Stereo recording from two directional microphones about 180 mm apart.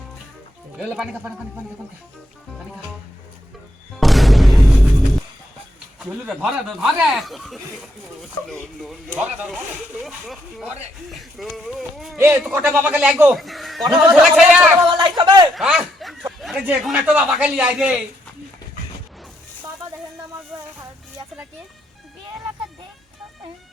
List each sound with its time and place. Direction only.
0.8 s speech: 5° right (ahead or behind)
4.0 s music: centre (ahead or behind)
6.0 s speech: centre (ahead or behind)
12.1 s a man's voice: 15° right (ahead or behind)
14.8 s speech: 25° right (ahead or behind)
15.5 s snicker: 5° right (ahead or behind)
16.4 s a man's voice: centre (ahead or behind)